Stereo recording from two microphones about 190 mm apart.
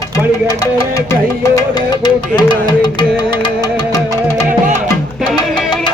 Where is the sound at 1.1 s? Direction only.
20° left (ahead or behind).